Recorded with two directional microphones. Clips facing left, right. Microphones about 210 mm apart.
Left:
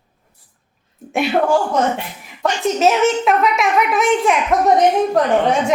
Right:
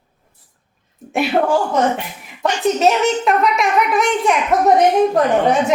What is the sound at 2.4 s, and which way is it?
A child's voice, centre (ahead or behind).